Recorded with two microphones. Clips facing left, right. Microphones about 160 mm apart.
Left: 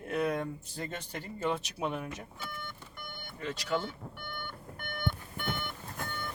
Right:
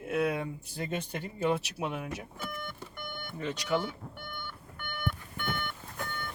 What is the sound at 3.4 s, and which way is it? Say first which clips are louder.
Speech: right 2 dB; 20° right (ahead or behind).